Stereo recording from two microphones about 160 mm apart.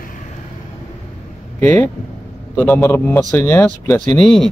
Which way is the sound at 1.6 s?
10° left (ahead or behind).